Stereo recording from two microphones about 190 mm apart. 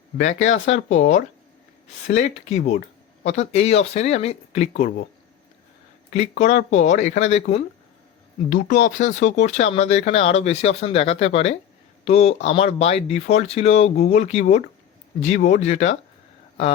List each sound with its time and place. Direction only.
0.2 s speech: 40° left (ahead or behind)
6.1 s speech: 40° left (ahead or behind)
8.4 s speech: 45° left (ahead or behind)